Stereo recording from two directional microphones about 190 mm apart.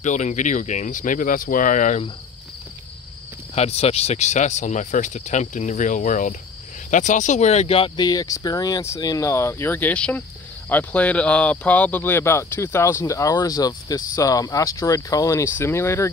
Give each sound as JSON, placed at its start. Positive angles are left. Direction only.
{"t": 0.0, "sound": "speech", "side_deg": 40}
{"t": 3.5, "sound": "speech", "side_deg": 35}